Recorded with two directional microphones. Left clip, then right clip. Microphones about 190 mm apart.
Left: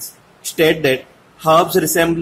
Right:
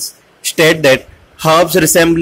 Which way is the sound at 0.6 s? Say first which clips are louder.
Right 5 dB; 25° right (ahead or behind).